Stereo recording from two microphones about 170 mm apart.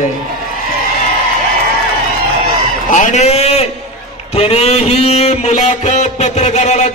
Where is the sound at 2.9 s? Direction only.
50° left (ahead or behind).